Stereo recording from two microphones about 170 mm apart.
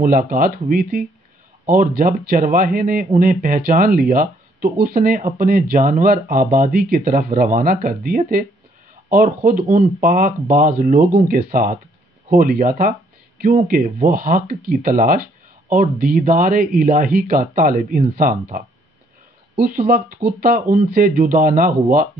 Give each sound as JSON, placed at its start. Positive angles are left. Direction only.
{"t": 0.0, "sound": "speech", "side_deg": -55}
{"t": 20.3, "sound": "speech", "side_deg": -55}